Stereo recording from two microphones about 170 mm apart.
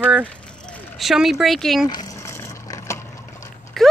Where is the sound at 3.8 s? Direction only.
Centre (ahead or behind).